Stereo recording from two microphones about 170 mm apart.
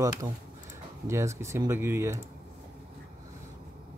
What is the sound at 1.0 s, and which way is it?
Speech, 15° right (ahead or behind).